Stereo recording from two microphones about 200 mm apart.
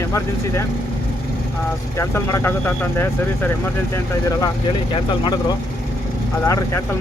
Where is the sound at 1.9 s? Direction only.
15° left (ahead or behind).